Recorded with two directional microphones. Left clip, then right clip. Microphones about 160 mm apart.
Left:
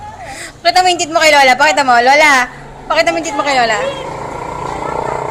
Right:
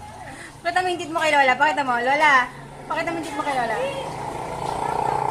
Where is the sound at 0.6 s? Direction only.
15° left (ahead or behind).